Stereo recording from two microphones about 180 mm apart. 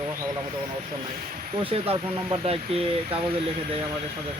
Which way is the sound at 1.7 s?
30° right (ahead or behind).